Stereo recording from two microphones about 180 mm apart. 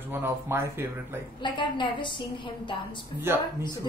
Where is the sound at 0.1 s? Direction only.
15° right (ahead or behind).